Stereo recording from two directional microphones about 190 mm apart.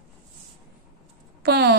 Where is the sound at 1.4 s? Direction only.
60° right (ahead or behind).